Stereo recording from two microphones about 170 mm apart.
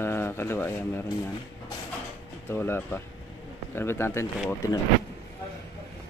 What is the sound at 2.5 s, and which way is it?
Speech, 10° left (ahead or behind).